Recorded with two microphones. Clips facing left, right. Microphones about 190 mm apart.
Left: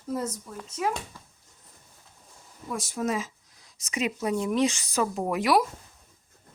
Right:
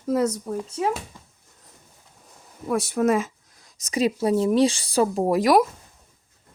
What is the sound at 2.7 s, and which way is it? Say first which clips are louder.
Speech: right 8 dB; 60° right (ahead or behind).